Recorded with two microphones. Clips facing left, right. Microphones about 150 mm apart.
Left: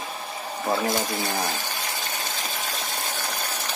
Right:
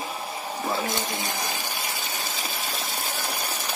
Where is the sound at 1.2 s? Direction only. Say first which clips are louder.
Left 3 dB; 10° right (ahead or behind).